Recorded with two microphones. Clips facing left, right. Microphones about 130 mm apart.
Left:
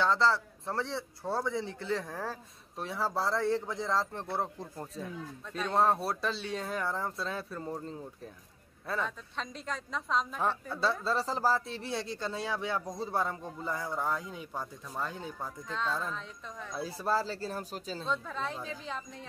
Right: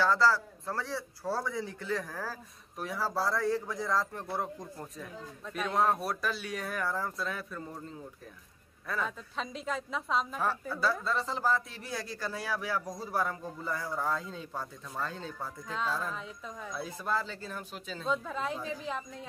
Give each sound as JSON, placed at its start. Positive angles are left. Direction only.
{"t": 0.0, "sound": "a man's voice", "side_deg": 25}
{"t": 9.0, "sound": "a woman's voice", "side_deg": -5}
{"t": 10.8, "sound": "a man's voice", "side_deg": 30}
{"t": 15.7, "sound": "a woman's voice", "side_deg": -5}
{"t": 16.7, "sound": "speech", "side_deg": 35}
{"t": 18.0, "sound": "a woman's voice", "side_deg": -5}